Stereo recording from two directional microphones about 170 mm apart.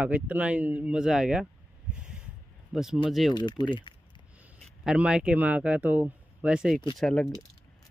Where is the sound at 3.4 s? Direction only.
25° left (ahead or behind).